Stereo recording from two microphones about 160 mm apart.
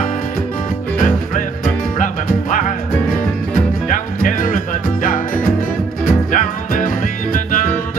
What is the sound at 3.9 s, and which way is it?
Music, 55° left (ahead or behind).